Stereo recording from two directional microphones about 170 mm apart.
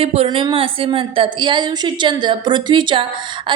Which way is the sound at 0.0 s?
35° right (ahead or behind).